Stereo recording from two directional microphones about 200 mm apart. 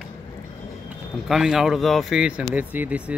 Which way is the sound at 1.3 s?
Centre (ahead or behind).